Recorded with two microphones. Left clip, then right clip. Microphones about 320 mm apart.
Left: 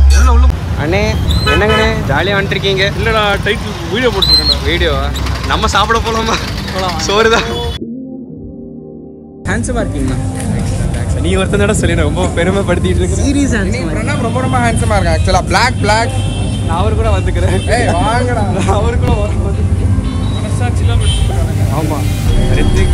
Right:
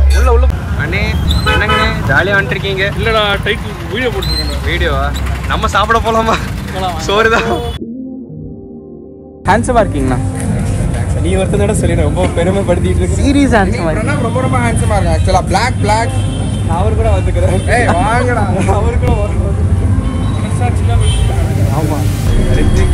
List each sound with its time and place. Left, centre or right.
0.8 s speech: centre
9.6 s speech: centre
11.2 s speech: centre
13.2 s speech: centre
13.6 s speech: centre
18.1 s speech: left
18.6 s speech: centre
22.5 s speech: centre